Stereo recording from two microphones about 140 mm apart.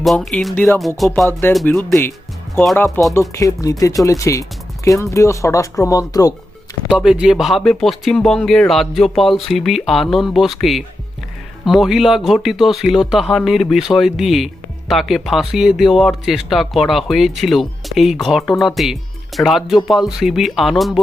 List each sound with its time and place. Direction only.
0.0 s speech: centre (ahead or behind)
0.8 s speech: centre (ahead or behind)
1.6 s speech: 10° left (ahead or behind)
6.8 s speech: 5° right (ahead or behind)